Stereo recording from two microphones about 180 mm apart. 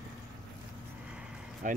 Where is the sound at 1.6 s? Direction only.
45° right (ahead or behind).